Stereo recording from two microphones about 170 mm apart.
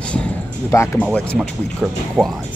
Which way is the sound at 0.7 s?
15° left (ahead or behind).